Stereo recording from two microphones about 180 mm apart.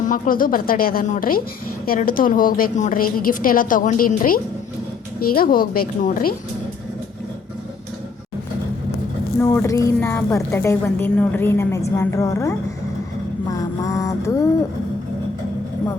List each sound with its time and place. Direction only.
0.0 s a woman's voice: 50° left (ahead or behind)
9.4 s a woman's voice: 15° left (ahead or behind)
13.5 s mantra: 20° left (ahead or behind)